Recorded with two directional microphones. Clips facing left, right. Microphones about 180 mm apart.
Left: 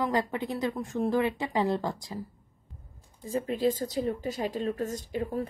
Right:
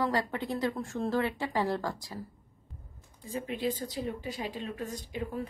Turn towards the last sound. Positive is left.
turn(degrees=40)  # may be behind; listen again after turning